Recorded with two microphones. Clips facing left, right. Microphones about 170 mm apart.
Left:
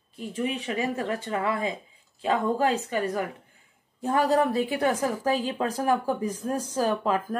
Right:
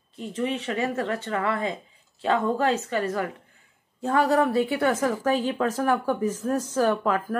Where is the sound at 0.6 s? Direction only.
15° left (ahead or behind).